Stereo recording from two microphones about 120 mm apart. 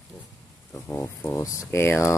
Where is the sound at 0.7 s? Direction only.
15° left (ahead or behind).